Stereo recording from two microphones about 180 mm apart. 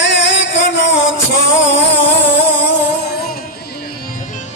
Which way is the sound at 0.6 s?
85° left.